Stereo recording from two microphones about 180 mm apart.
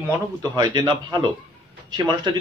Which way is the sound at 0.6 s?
20° right (ahead or behind).